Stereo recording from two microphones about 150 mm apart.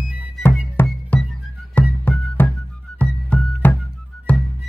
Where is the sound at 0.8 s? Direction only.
10° left (ahead or behind).